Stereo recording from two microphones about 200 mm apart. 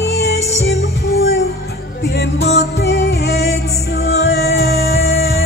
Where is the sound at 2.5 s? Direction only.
55° left (ahead or behind).